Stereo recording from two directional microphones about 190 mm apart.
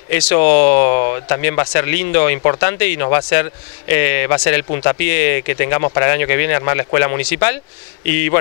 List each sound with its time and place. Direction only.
0.1 s speech: 15° left (ahead or behind)